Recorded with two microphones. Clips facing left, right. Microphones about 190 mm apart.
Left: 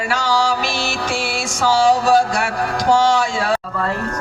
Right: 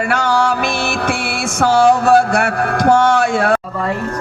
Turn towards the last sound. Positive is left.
turn(degrees=-55)  # may be behind; listen again after turning